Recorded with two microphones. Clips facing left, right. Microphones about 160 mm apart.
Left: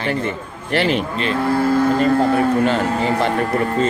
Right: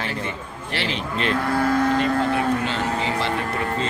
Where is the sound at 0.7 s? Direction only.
50° left (ahead or behind).